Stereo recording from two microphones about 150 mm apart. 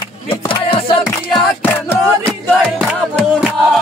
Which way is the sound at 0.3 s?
35° left (ahead or behind).